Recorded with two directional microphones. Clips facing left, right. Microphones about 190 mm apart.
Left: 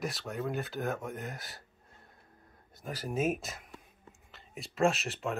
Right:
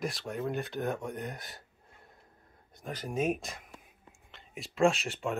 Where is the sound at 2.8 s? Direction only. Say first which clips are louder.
Even; 5° left (ahead or behind).